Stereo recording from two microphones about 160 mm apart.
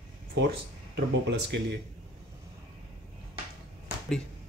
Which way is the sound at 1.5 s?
90° right.